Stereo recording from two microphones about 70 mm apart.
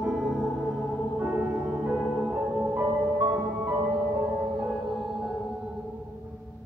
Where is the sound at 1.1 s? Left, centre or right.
Right.